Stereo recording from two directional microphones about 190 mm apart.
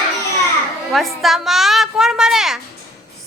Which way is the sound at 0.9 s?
Centre (ahead or behind).